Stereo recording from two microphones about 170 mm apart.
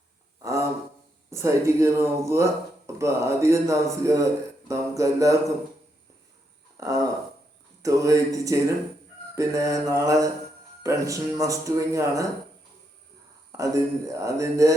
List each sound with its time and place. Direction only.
1.3 s speech: 15° right (ahead or behind)
6.7 s a sound: 20° right (ahead or behind)
7.8 s speech: 20° right (ahead or behind)
13.5 s speech: 20° right (ahead or behind)